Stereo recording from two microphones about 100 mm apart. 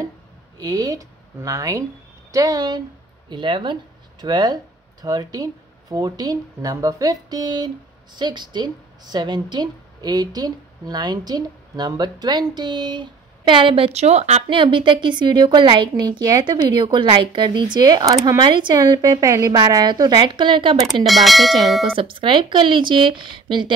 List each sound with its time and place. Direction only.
0.6 s speech: 40° right (ahead or behind)
3.3 s a woman's voice: 55° right (ahead or behind); by 14.4 s 90° right
14.5 s a woman's voice: 55° right (ahead or behind); by 18.4 s 35° right (ahead or behind)
18.4 s a woman's voice: 50° right (ahead or behind)
18.8 s a woman's voice: 35° right (ahead or behind); by 20.9 s 55° right (ahead or behind)
21.0 s speech: centre (ahead or behind)
21.8 s a woman's voice: 60° right (ahead or behind)